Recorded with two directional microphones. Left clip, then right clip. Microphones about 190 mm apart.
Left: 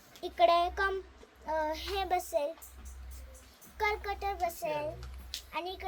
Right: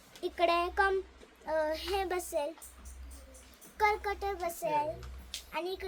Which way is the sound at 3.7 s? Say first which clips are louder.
Right 3 dB; 10° right (ahead or behind).